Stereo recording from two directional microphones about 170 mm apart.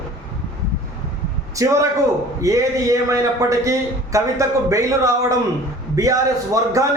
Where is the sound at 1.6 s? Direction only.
20° right (ahead or behind).